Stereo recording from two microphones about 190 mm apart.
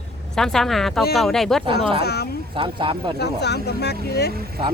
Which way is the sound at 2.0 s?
60° left (ahead or behind).